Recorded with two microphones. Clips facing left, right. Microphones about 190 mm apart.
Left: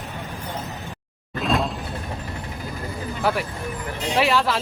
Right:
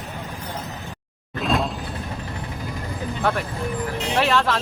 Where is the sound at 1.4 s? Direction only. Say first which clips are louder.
Even; centre (ahead or behind).